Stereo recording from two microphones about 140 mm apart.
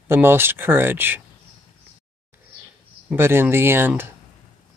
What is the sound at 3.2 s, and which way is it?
Speech, 15° right (ahead or behind).